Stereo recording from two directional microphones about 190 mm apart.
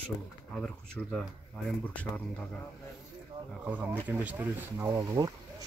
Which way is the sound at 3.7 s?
10° right (ahead or behind).